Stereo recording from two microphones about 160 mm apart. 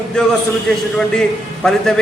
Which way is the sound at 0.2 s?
5° left (ahead or behind).